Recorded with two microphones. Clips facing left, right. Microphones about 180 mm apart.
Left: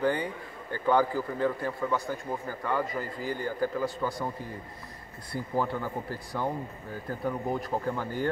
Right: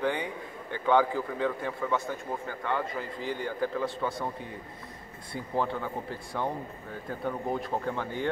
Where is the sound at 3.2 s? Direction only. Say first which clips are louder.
Right 1 dB; 20° right (ahead or behind).